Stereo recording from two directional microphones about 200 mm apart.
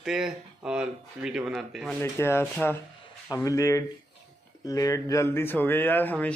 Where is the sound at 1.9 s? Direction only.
10° left (ahead or behind).